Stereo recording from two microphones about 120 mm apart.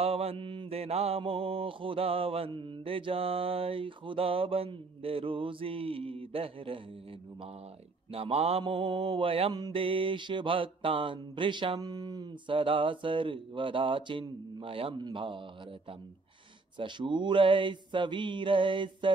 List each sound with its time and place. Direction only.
0.0 s mantra: 55° right (ahead or behind)
8.1 s mantra: 55° right (ahead or behind)
16.7 s mantra: 40° right (ahead or behind)